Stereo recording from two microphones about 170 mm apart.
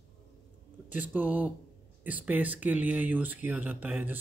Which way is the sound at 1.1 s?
10° right (ahead or behind).